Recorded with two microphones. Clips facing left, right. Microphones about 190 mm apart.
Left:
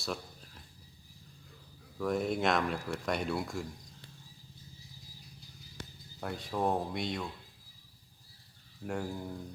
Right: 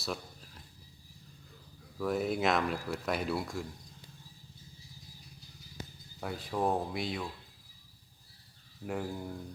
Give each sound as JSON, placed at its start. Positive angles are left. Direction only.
{"t": 0.0, "sound": "a sound", "side_deg": 0}
{"t": 2.0, "sound": "speech", "side_deg": 0}
{"t": 6.1, "sound": "speech", "side_deg": 0}
{"t": 8.9, "sound": "speech", "side_deg": 0}